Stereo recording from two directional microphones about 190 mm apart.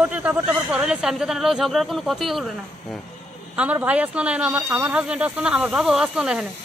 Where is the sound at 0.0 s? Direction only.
10° right (ahead or behind).